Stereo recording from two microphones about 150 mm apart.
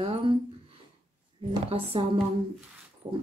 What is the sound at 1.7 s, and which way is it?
Speech, 40° right (ahead or behind).